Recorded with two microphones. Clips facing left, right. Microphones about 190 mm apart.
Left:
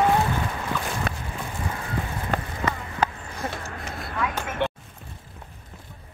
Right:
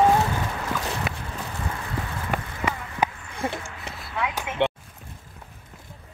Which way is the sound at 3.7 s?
50° left (ahead or behind).